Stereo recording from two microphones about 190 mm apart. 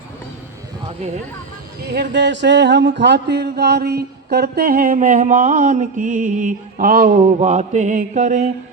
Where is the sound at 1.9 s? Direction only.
60° right (ahead or behind).